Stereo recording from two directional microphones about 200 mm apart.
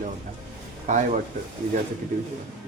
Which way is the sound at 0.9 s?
40° right (ahead or behind).